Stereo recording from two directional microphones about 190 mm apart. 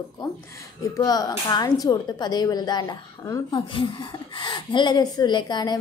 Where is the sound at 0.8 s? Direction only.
20° left (ahead or behind).